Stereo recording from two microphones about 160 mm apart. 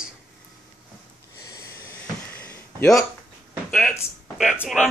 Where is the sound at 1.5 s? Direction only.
20° left (ahead or behind).